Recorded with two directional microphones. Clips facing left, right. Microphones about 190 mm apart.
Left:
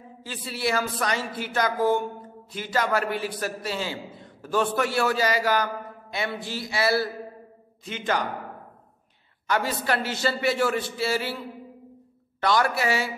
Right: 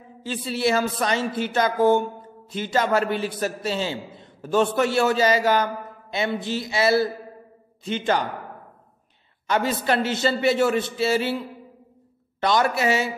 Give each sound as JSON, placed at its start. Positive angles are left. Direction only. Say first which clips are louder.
{"t": 0.2, "sound": "a man's voice", "louder": "right 6 dB", "side_deg": -25}
{"t": 9.5, "sound": "a man's voice", "louder": "right 3 dB", "side_deg": -20}
{"t": 12.4, "sound": "a man's voice", "louder": "right 2 dB", "side_deg": -20}